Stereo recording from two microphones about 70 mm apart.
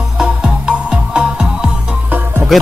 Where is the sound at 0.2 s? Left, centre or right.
Centre.